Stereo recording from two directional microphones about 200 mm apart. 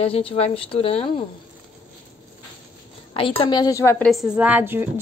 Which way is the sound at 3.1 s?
25° left (ahead or behind).